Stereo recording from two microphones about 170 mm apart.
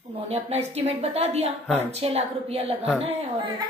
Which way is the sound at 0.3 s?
40° right (ahead or behind).